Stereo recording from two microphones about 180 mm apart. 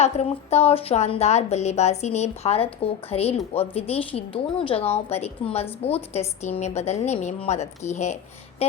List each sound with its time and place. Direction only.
0.0 s a woman's voice: 35° left (ahead or behind)